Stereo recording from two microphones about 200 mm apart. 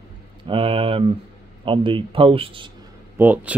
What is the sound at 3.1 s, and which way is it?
Speech, 10° right (ahead or behind).